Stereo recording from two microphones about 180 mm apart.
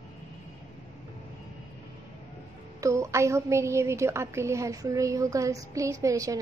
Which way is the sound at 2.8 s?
15° right (ahead or behind).